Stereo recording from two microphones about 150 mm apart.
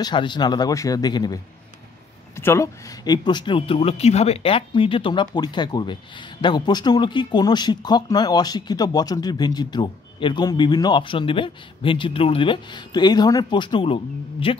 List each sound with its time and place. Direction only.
0.0 s speech: 30° left (ahead or behind)